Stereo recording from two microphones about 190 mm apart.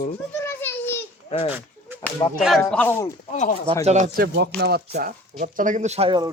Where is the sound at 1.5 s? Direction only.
10° right (ahead or behind).